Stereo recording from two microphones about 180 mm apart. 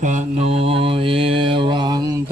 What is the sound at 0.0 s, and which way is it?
Mantra, 40° right (ahead or behind).